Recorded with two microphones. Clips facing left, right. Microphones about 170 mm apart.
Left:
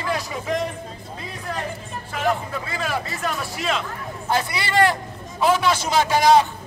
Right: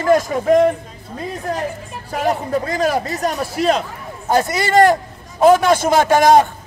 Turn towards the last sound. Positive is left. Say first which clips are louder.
# right 4 dB
turn(degrees=-50)  # may be behind; listen again after turning